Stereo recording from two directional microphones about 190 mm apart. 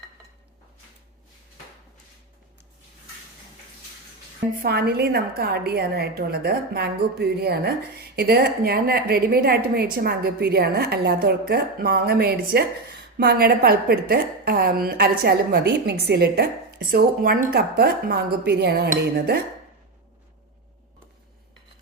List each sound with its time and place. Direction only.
4.6 s a woman's voice: 55° right (ahead or behind)